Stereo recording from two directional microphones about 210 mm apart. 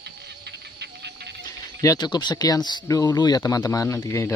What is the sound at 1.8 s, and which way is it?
Speech, 20° left (ahead or behind).